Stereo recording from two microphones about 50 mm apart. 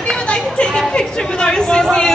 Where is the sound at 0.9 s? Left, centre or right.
Centre.